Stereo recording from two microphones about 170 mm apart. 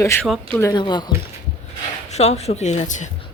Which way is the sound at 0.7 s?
25° left (ahead or behind).